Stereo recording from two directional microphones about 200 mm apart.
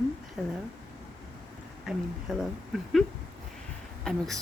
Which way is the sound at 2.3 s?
Centre (ahead or behind).